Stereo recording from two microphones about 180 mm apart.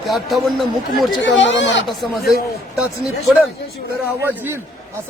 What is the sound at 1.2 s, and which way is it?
Speech, 90° left.